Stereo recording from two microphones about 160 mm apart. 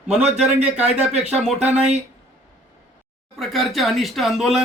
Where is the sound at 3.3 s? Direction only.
Centre (ahead or behind).